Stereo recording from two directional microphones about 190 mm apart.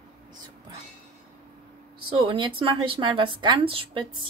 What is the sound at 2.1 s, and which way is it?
A woman's voice, 25° right (ahead or behind).